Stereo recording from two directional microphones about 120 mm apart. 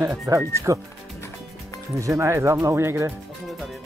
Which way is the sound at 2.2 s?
25° right (ahead or behind).